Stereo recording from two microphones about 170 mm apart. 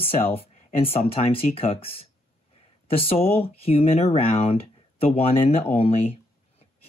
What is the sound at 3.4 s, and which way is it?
Speech, 35° left (ahead or behind).